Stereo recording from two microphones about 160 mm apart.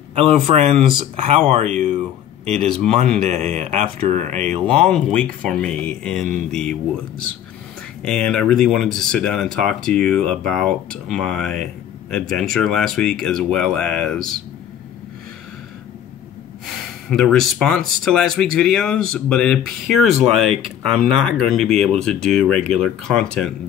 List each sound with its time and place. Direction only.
0.1 s a man's voice: 40° right (ahead or behind)
2.4 s speech: 5° left (ahead or behind)
3.3 s a man's voice: 40° right (ahead or behind)
4.7 s speech: 5° left (ahead or behind)
8.0 s speech: 5° left (ahead or behind)
16.6 s speech: 5° left (ahead or behind)